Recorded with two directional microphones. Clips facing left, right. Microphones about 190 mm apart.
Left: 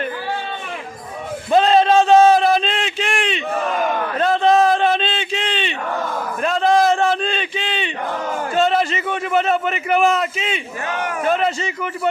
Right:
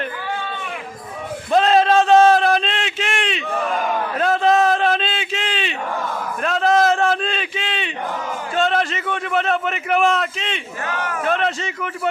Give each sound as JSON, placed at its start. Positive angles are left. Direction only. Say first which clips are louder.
{"t": 1.5, "sound": "a sound", "louder": "left 1 dB", "side_deg": 0}
{"t": 10.8, "sound": "speech", "louder": "left 2 dB", "side_deg": 20}
{"t": 11.2, "sound": "a man's voice", "louder": "left 2 dB", "side_deg": 0}